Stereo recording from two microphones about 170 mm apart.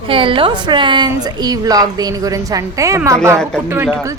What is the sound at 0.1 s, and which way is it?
A woman's voice, 30° right (ahead or behind).